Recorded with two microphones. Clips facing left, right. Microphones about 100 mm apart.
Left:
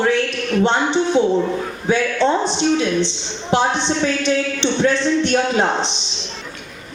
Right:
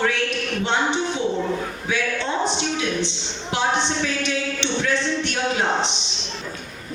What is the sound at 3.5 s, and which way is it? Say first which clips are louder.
Speech: left 4 dB; 30° left (ahead or behind).